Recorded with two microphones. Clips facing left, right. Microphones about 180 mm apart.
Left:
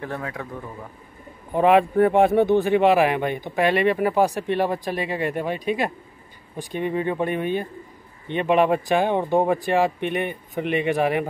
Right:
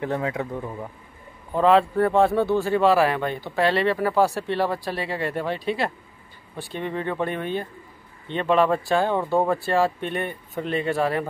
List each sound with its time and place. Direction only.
0.0 s speech: 20° right (ahead or behind)
1.5 s speech: 15° left (ahead or behind)